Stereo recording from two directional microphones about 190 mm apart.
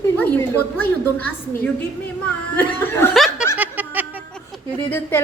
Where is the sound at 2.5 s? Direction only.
10° left (ahead or behind).